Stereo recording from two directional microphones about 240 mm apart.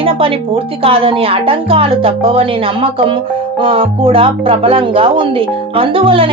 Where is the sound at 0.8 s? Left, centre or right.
Right.